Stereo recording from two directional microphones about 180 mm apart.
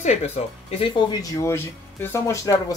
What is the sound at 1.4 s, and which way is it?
Speech, 15° left (ahead or behind).